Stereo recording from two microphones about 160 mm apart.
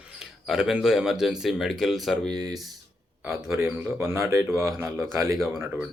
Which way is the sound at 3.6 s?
15° right (ahead or behind).